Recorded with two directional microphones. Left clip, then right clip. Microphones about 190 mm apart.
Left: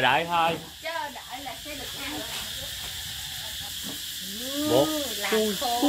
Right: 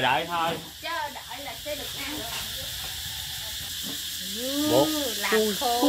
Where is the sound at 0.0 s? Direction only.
20° left (ahead or behind).